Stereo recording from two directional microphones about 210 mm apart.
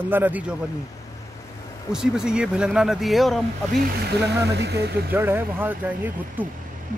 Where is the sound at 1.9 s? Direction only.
5° right (ahead or behind).